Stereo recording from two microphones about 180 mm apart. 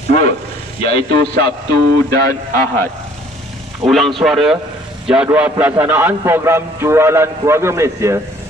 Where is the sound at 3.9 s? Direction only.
Centre (ahead or behind).